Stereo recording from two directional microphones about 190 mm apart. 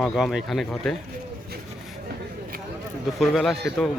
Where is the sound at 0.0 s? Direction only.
Centre (ahead or behind).